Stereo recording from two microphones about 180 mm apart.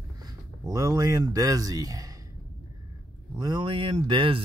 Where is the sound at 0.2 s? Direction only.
20° right (ahead or behind).